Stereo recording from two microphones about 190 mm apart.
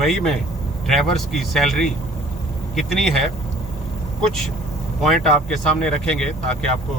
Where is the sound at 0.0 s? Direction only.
Centre (ahead or behind).